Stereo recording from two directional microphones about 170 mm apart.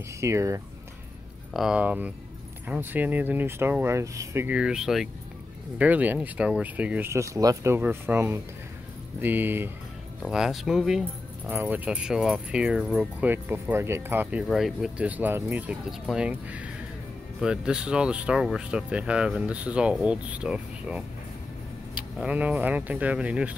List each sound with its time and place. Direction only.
0.2 s speech: 15° right (ahead or behind)
1.5 s speech: 5° right (ahead or behind)